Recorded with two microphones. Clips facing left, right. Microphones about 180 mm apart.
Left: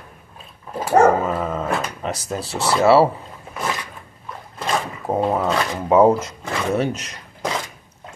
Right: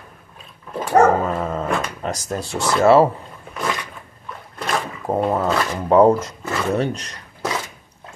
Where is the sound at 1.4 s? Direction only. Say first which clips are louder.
Even; centre (ahead or behind).